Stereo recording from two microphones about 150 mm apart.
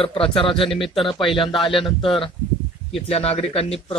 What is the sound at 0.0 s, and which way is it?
A man's voice, 35° left (ahead or behind).